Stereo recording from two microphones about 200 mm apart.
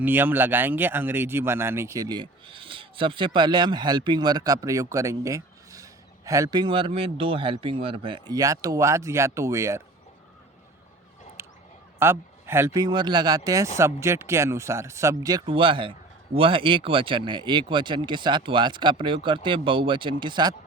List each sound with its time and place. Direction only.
0.0 s speech: 10° right (ahead or behind)
11.4 s a sound: 10° right (ahead or behind)
11.9 s speech: 10° right (ahead or behind)